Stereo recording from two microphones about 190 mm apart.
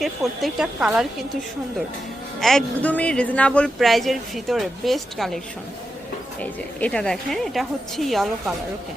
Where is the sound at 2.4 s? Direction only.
Centre (ahead or behind).